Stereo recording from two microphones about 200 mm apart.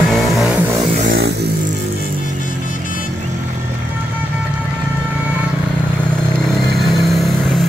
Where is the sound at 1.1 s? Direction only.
55° right (ahead or behind).